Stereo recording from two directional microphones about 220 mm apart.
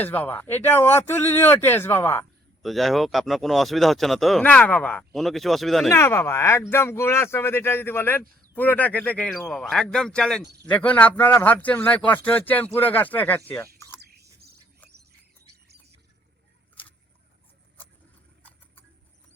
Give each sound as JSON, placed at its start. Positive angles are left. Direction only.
{"t": 0.0, "sound": "a man's voice", "side_deg": 10}
{"t": 2.6, "sound": "speech", "side_deg": 0}
{"t": 5.9, "sound": "a man's voice", "side_deg": 10}
{"t": 8.2, "sound": "speech", "side_deg": -40}
{"t": 8.5, "sound": "speech", "side_deg": 10}
{"t": 10.4, "sound": "speech", "side_deg": -50}
{"t": 10.7, "sound": "a man's voice", "side_deg": 5}
{"t": 14.0, "sound": "bird", "side_deg": -45}